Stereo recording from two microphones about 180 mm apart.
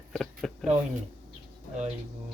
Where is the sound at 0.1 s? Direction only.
Centre (ahead or behind).